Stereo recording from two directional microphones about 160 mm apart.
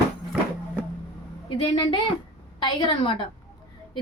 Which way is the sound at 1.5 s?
30° left (ahead or behind).